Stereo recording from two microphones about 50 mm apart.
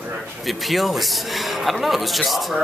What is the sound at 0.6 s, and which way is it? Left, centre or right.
A man's voice, centre.